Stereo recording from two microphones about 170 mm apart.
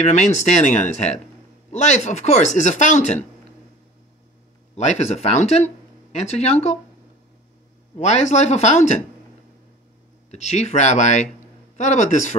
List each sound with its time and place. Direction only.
0.0 s speech: 40° left (ahead or behind)
4.7 s speech: 40° left (ahead or behind)
8.0 s speech: 40° left (ahead or behind)
10.3 s speech: 40° left (ahead or behind)